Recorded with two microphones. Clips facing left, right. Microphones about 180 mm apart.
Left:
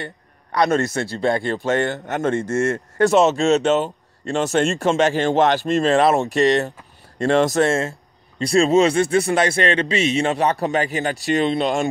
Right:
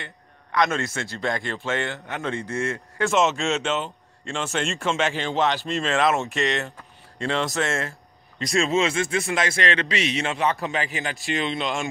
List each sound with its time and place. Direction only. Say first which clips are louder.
0.0 s speech: left 8 dB; 35° left (ahead or behind)